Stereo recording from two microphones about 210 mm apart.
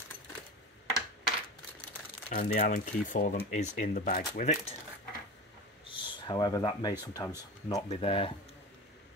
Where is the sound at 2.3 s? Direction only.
40° left (ahead or behind).